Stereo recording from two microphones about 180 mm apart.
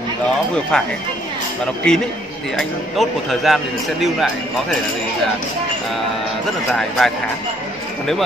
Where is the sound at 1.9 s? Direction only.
5° left (ahead or behind).